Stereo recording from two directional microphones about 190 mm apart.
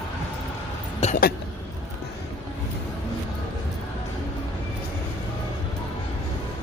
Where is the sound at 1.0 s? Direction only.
35° left (ahead or behind).